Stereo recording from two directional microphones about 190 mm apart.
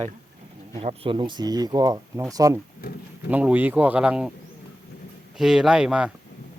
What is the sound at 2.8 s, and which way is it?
Speech, 50° left (ahead or behind).